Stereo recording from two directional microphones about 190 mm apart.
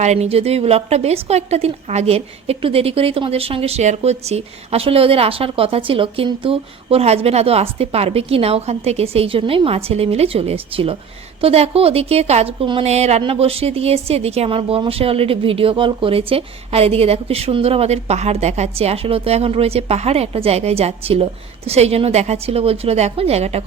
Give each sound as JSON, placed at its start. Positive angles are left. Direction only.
{"t": 0.0, "sound": "a woman's voice", "side_deg": -35}